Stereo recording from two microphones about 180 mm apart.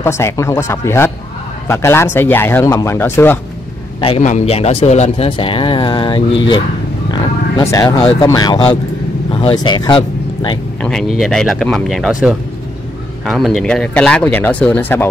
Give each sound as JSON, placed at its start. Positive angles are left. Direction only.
{"t": 0.0, "sound": "speech", "side_deg": 15}
{"t": 4.0, "sound": "speech", "side_deg": 40}
{"t": 7.1, "sound": "a sound", "side_deg": 20}
{"t": 8.2, "sound": "speech", "side_deg": 20}
{"t": 10.8, "sound": "speech", "side_deg": 5}